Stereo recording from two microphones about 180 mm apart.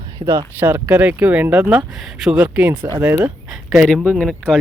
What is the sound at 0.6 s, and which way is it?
Speech, 10° right (ahead or behind).